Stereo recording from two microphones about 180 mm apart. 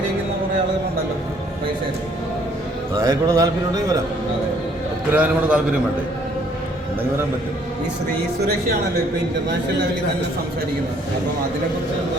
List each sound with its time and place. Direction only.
2.9 s a man's voice: 20° right (ahead or behind)
5.1 s a man's voice: 10° right (ahead or behind)